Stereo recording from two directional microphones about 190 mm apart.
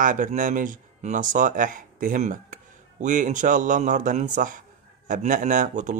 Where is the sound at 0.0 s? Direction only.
40° right (ahead or behind).